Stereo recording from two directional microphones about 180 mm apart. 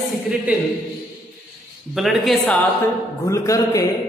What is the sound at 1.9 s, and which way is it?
Speech, centre (ahead or behind).